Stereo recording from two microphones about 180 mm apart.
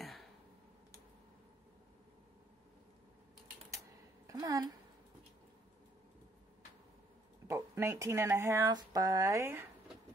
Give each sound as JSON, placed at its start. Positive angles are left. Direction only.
{"t": 4.3, "sound": "speech", "side_deg": -20}
{"t": 7.4, "sound": "speech", "side_deg": -15}